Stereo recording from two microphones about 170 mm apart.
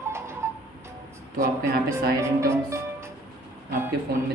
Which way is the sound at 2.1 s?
15° right (ahead or behind).